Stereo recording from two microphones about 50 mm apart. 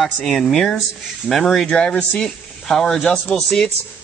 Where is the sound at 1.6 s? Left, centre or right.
Centre.